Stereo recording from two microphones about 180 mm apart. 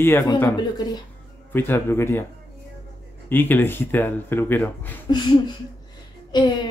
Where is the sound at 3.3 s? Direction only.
10° left (ahead or behind).